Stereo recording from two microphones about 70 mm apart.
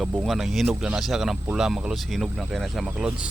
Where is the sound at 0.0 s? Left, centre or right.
Centre.